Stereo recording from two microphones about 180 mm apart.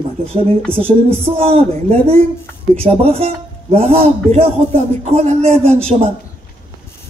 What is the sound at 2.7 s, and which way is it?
A man's voice, 35° right (ahead or behind).